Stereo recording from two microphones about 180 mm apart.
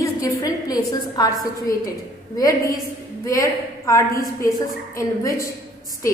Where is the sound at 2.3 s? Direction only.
20° left (ahead or behind).